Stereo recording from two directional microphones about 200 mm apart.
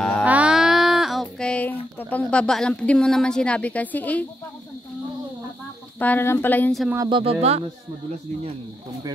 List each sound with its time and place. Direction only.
0.0 s a sound: 5° left (ahead or behind)
5.9 s speech: 10° left (ahead or behind)
7.1 s speech: 25° right (ahead or behind)